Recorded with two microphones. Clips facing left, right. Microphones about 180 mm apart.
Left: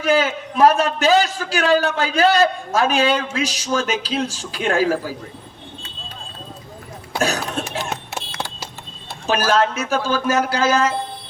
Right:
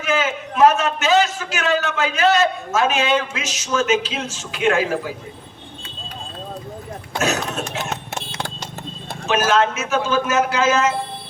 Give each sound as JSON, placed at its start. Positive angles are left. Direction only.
{"t": 0.0, "sound": "a man's voice", "side_deg": 35}
{"t": 7.2, "sound": "a man's voice", "side_deg": 35}
{"t": 9.2, "sound": "a man's voice", "side_deg": 35}